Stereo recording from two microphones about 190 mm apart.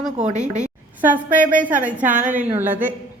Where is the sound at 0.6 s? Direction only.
10° right (ahead or behind).